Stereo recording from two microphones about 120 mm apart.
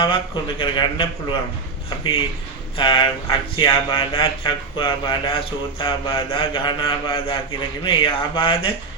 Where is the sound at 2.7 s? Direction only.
45° left (ahead or behind).